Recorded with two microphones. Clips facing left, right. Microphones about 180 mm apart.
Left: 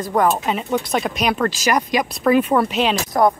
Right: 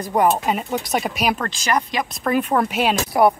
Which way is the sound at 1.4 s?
15° left (ahead or behind).